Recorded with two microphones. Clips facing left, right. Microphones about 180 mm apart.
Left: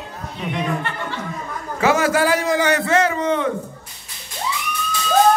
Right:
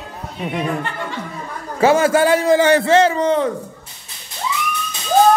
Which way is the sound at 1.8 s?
30° right (ahead or behind).